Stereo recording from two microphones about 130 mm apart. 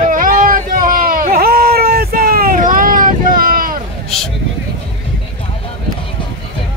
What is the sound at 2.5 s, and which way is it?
Boat, 90° right.